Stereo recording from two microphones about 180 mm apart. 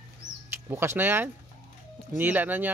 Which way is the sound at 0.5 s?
10° right (ahead or behind).